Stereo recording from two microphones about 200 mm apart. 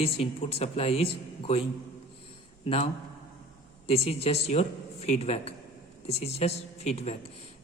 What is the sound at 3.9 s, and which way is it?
A woman's voice, 30° left (ahead or behind).